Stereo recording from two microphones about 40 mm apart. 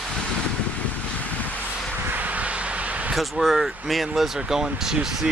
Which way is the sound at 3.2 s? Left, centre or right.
Centre.